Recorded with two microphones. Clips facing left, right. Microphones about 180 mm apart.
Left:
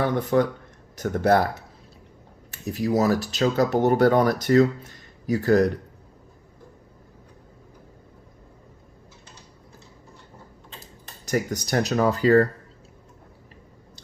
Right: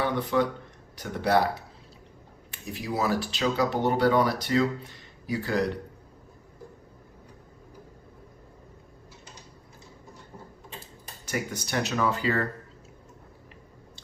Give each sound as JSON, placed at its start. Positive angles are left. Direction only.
{"t": 0.0, "sound": "speech", "side_deg": 45}
{"t": 2.5, "sound": "speech", "side_deg": 45}
{"t": 11.3, "sound": "speech", "side_deg": 40}